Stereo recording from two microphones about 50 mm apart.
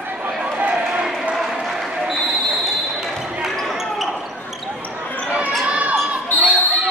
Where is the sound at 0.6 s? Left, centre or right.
Right.